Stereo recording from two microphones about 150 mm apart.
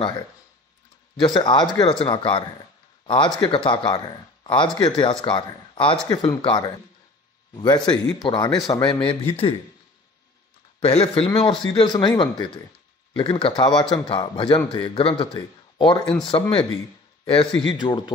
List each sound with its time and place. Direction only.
1.2 s a man's voice: 30° left (ahead or behind)
8.8 s a man's voice: 40° left (ahead or behind)
10.8 s a man's voice: 40° left (ahead or behind)
17.2 s a sound: 40° left (ahead or behind)
17.6 s a man's voice: 30° left (ahead or behind)